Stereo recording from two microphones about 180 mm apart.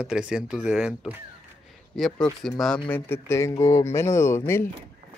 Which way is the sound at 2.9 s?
15° left (ahead or behind).